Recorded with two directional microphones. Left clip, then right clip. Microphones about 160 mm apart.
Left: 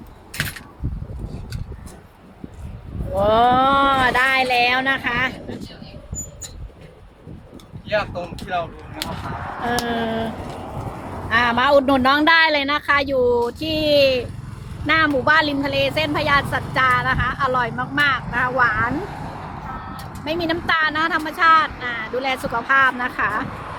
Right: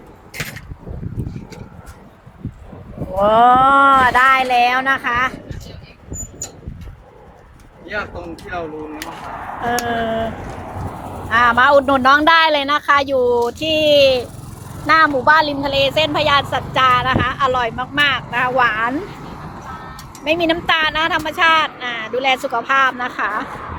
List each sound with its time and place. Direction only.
3.2 s speech: 20° left (ahead or behind)
9.6 s speech: 15° left (ahead or behind)
11.3 s a woman's voice: 15° left (ahead or behind)
15.7 s a woman's voice: 5° left (ahead or behind)
20.2 s a woman's voice: centre (ahead or behind)